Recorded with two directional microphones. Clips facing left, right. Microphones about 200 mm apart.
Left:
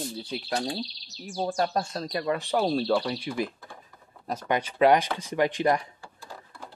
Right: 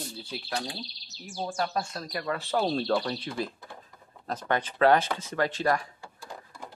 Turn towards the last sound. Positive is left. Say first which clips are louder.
# left 3 dB
turn(degrees=20)  # may be behind; listen again after turning